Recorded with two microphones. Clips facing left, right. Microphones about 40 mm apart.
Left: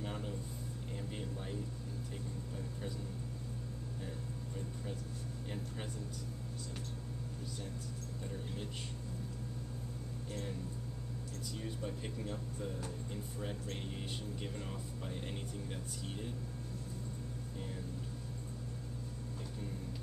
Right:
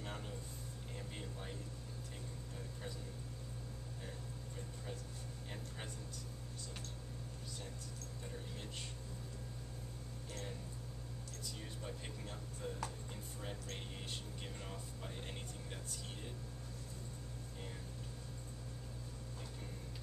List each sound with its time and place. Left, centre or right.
0.0 s a sound: centre
0.9 s speech: centre
11.6 s speech: centre